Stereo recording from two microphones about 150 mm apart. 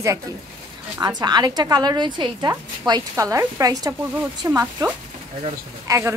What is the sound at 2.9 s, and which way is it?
A woman's voice, 20° right (ahead or behind).